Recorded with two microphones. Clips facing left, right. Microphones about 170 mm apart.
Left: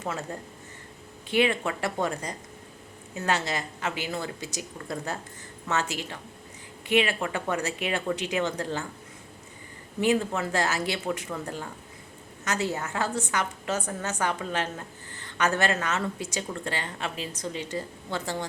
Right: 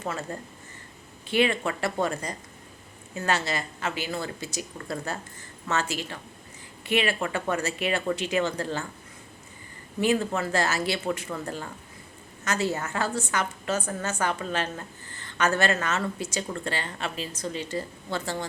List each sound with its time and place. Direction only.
0.0 s a woman's voice: 15° left (ahead or behind)
10.0 s a woman's voice: 15° left (ahead or behind)